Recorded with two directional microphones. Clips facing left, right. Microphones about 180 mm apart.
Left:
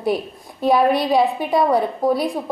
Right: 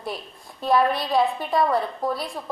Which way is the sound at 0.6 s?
5° left (ahead or behind).